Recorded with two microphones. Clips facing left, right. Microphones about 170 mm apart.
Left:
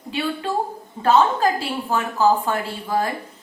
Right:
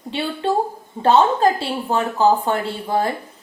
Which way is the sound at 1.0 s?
30° right (ahead or behind).